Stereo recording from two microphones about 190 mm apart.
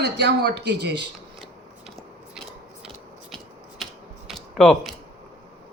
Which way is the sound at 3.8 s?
Centre (ahead or behind).